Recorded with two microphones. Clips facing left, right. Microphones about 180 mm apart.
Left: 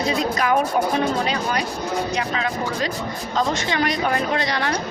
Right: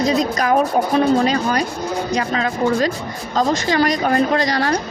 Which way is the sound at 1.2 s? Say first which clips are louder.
Right 5 dB; 45° right (ahead or behind).